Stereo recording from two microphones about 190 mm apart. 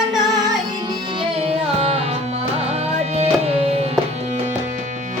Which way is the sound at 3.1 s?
35° right (ahead or behind).